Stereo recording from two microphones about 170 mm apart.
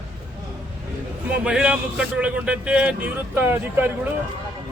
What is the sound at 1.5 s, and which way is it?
A man's voice, 5° right (ahead or behind).